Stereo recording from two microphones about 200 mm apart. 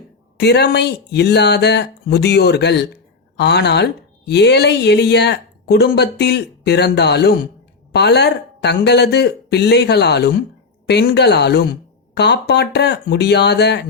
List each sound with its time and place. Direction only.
0.3 s speech: 55° left (ahead or behind)